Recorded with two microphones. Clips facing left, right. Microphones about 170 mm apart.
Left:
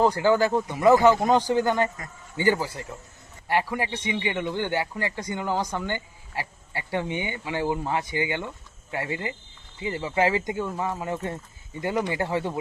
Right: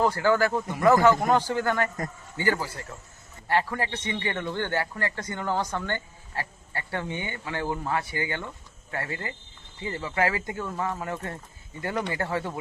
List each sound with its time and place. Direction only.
0.0 s a man's voice: 20° left (ahead or behind)